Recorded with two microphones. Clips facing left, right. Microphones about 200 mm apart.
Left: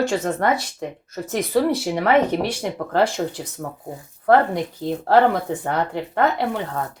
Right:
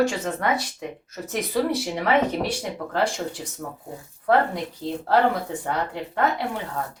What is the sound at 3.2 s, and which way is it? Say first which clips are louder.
Speech: left 5 dB; 50° left (ahead or behind).